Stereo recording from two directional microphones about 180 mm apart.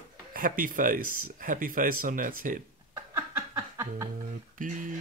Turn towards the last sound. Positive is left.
turn(degrees=-45)  # may be behind; listen again after turning